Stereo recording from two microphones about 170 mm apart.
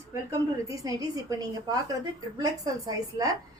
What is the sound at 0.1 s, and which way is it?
A woman's voice, 20° right (ahead or behind).